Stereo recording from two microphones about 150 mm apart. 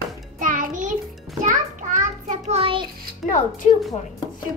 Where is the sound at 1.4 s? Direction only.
55° right (ahead or behind); by 2.9 s 35° right (ahead or behind).